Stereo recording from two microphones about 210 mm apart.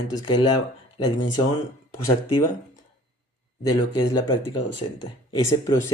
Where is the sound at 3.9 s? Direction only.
20° left (ahead or behind).